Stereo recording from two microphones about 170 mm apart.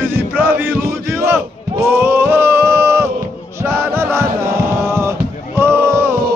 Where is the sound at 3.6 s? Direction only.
15° right (ahead or behind).